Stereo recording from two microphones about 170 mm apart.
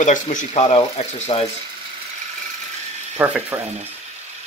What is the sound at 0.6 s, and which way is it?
Speech, 35° left (ahead or behind).